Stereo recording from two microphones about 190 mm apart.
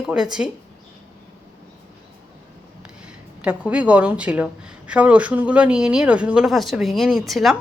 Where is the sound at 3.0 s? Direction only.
5° right (ahead or behind).